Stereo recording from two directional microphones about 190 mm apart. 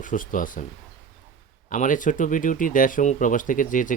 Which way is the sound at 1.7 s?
45° left (ahead or behind).